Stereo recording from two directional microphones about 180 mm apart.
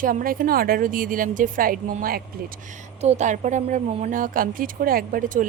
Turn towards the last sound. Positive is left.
turn(degrees=-50)  # may be behind; listen again after turning